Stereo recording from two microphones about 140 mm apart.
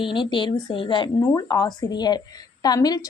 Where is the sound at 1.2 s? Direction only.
25° left (ahead or behind).